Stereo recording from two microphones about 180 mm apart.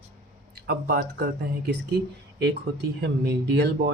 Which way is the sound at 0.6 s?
60° right (ahead or behind).